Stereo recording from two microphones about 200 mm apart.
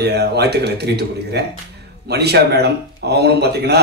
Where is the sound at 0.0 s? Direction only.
55° right (ahead or behind).